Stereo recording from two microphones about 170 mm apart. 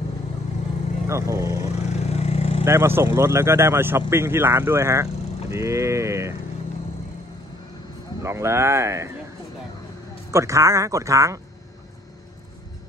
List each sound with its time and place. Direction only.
1.0 s speech: 15° right (ahead or behind)
1.7 s vehicle: 40° left (ahead or behind)
2.6 s speech: 15° right (ahead or behind)
8.2 s speech: 15° right (ahead or behind)
10.3 s speech: 20° right (ahead or behind)